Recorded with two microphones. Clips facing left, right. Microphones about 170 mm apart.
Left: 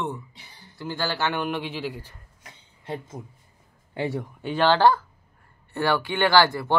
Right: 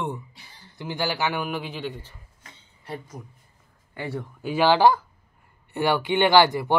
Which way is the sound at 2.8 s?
25° left (ahead or behind).